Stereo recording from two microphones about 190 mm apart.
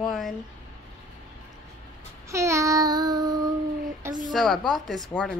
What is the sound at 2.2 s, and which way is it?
Child singing, 15° right (ahead or behind).